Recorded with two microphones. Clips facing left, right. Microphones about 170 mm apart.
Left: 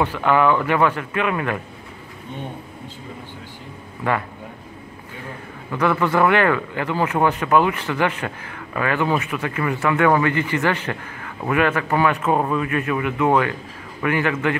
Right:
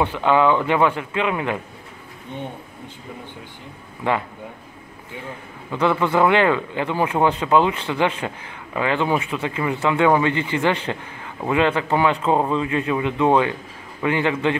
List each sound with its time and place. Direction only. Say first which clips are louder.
0.0 s speech: even; 20° right (ahead or behind)
4.0 s speech: even; 20° right (ahead or behind)
5.7 s speech: even; 20° right (ahead or behind)